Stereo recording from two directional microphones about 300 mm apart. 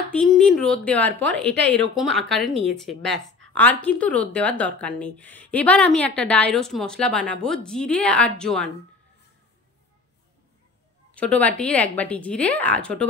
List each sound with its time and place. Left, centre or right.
0.1 s speech: centre
11.1 s speech: centre